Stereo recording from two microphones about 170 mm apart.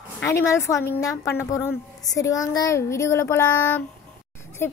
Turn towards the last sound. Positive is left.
turn(degrees=15)  # may be behind; listen again after turning